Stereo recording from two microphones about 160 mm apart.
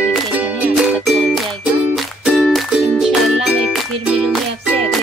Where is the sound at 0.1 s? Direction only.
10° right (ahead or behind).